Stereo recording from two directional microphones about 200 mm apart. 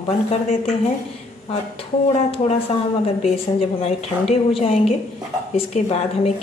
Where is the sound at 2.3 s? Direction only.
30° left (ahead or behind).